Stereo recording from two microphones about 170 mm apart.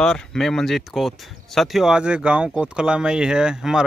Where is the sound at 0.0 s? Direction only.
5° left (ahead or behind).